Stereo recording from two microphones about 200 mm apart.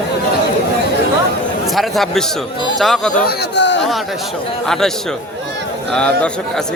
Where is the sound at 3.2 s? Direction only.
60° left (ahead or behind).